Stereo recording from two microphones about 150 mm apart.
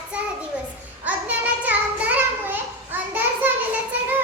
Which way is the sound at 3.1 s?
10° right (ahead or behind).